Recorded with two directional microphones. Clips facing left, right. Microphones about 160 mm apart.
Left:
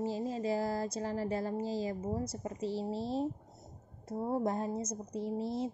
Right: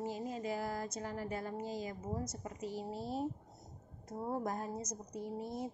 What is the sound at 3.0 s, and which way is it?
Speech, 90° left.